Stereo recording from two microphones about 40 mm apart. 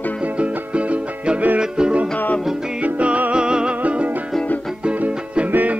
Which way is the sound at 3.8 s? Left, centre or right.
Right.